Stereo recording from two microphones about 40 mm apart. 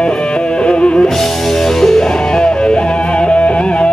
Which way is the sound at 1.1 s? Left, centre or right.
Centre.